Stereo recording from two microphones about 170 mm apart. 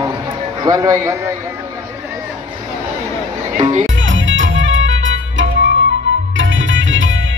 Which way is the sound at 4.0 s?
90° right.